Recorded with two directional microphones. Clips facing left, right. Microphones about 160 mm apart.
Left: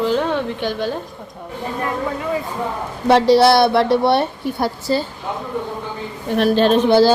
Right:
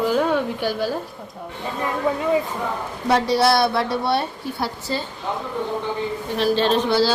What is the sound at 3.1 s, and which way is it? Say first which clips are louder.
A woman's voice: left 6 dB; 65° left (ahead or behind).